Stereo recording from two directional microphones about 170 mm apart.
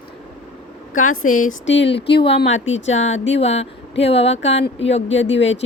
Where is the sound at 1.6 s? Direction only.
90° left.